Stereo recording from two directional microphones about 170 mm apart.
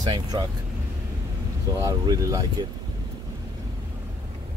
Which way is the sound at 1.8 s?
20° right (ahead or behind).